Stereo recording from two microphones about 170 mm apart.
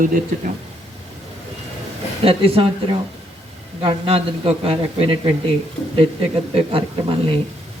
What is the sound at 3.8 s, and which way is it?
A man's voice, 35° right (ahead or behind).